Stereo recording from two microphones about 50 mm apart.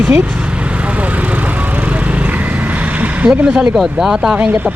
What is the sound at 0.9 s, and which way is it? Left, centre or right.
Vehicle, right.